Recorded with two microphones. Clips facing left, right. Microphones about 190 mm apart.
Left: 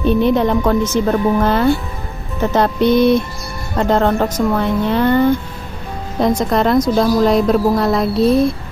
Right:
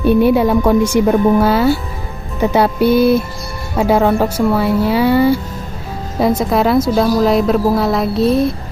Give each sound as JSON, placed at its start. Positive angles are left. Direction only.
{"t": 0.0, "sound": "a woman's voice", "side_deg": -10}